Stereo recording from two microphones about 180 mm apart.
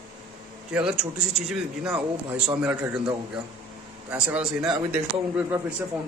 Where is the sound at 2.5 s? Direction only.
15° right (ahead or behind).